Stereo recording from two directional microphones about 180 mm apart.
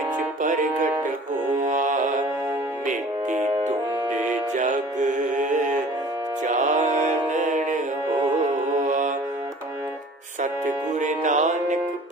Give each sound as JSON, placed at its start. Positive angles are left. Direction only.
{"t": 0.4, "sound": "speech", "side_deg": -45}
{"t": 1.6, "sound": "music", "side_deg": -45}
{"t": 10.4, "sound": "music", "side_deg": -45}